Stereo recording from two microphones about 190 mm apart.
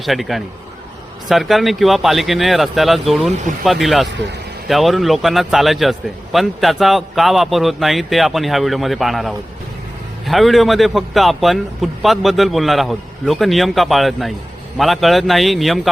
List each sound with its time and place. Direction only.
0.0 s a man's voice: centre (ahead or behind)